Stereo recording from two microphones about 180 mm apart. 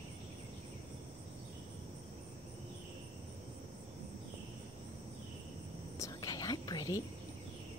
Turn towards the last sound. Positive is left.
turn(degrees=20)  # may be behind; listen again after turning